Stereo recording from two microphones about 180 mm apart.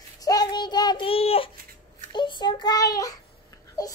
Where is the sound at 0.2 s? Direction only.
20° left (ahead or behind).